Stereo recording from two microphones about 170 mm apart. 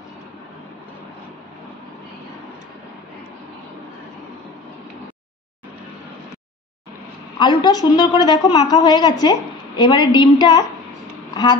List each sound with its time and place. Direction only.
7.3 s a woman's voice: 25° left (ahead or behind)